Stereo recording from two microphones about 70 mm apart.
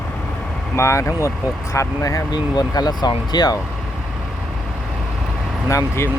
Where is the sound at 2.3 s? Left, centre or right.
Left.